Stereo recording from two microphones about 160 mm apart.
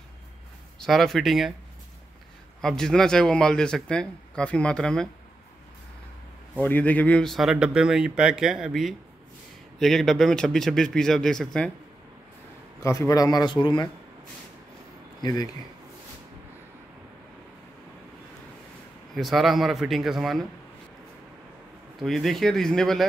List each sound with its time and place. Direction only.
0.7 s a man's voice: centre (ahead or behind)
2.6 s a man's voice: 5° left (ahead or behind)
6.5 s a man's voice: 10° left (ahead or behind)
12.8 s a man's voice: 20° left (ahead or behind)
19.1 s a man's voice: centre (ahead or behind)
21.9 s a man's voice: centre (ahead or behind)